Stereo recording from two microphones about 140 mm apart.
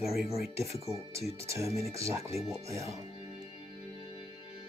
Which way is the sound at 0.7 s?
20° right (ahead or behind).